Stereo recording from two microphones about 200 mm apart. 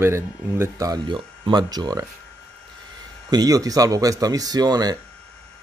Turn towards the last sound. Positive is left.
turn(degrees=-20)  # may be behind; listen again after turning